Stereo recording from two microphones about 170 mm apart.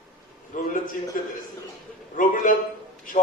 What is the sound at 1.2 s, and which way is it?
A man's voice, 50° left (ahead or behind).